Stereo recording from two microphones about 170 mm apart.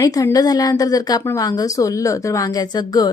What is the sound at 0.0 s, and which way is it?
A woman's voice, 20° left (ahead or behind).